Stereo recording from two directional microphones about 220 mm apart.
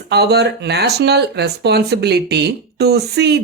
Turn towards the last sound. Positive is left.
turn(degrees=-50)  # may be behind; listen again after turning